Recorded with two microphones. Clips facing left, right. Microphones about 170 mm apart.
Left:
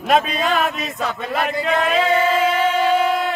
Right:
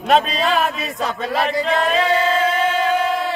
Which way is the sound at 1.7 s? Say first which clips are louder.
Left 2 dB; 5° left (ahead or behind).